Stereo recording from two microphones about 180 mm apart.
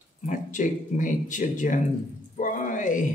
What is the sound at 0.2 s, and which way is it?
Speech, 45° left (ahead or behind).